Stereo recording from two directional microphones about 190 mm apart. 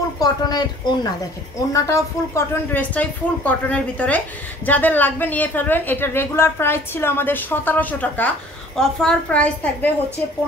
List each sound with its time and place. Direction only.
0.2 s a woman's voice: 20° left (ahead or behind)